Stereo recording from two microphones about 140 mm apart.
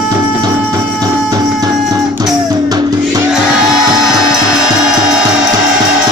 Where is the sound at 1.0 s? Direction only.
25° right (ahead or behind).